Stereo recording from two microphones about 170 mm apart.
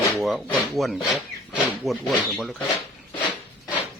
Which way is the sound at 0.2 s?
Centre (ahead or behind).